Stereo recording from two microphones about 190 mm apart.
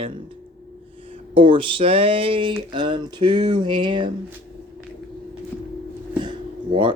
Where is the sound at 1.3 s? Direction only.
25° right (ahead or behind).